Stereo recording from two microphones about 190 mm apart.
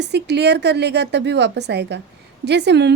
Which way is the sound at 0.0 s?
65° right (ahead or behind).